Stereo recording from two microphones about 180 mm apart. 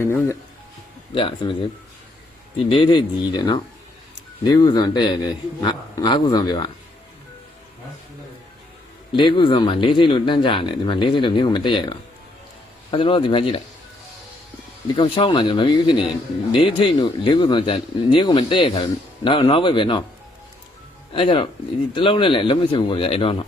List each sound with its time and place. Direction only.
0.0 s speech: 15° left (ahead or behind)
1.1 s speech: 30° left (ahead or behind)
2.6 s speech: 30° left (ahead or behind)
9.1 s speech: 25° left (ahead or behind)
14.9 s speech: 30° left (ahead or behind)
21.1 s speech: 30° left (ahead or behind)